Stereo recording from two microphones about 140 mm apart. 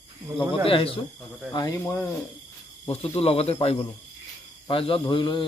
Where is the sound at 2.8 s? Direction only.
45° left (ahead or behind).